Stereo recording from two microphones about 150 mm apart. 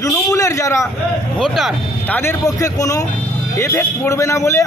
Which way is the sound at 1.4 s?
Centre (ahead or behind).